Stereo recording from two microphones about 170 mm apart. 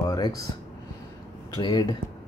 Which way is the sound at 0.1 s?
20° left (ahead or behind).